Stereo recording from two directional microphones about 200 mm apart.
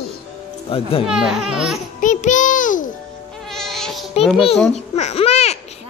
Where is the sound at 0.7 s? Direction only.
30° left (ahead or behind).